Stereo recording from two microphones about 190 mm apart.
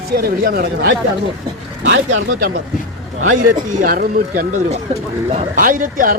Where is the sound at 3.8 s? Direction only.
50° right (ahead or behind).